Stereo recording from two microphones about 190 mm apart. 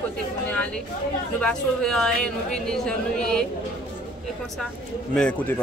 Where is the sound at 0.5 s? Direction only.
5° left (ahead or behind).